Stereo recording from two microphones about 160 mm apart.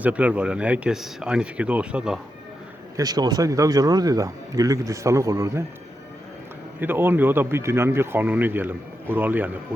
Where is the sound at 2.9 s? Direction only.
25° right (ahead or behind).